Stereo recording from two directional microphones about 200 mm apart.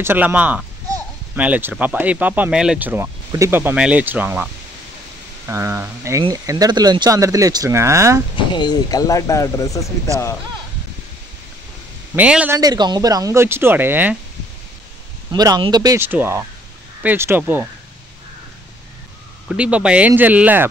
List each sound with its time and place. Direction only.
0.0 s speech: 10° right (ahead or behind)
5.5 s speech: 15° right (ahead or behind)
8.5 s speech: 20° left (ahead or behind)
12.2 s speech: 5° right (ahead or behind)
12.5 s speech: 20° right (ahead or behind)
15.3 s speech: 20° right (ahead or behind)
19.5 s speech: 5° right (ahead or behind)